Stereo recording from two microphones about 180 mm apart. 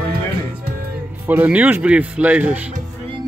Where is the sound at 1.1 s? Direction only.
10° right (ahead or behind).